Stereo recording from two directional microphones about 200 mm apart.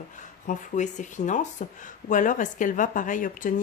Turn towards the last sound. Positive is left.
turn(degrees=40)  # may be behind; listen again after turning